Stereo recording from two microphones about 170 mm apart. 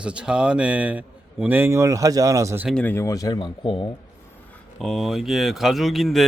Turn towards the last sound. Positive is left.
turn(degrees=0)  # may be behind; listen again after turning